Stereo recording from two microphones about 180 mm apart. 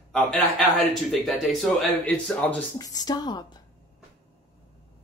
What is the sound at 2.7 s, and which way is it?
Speech, 20° left (ahead or behind).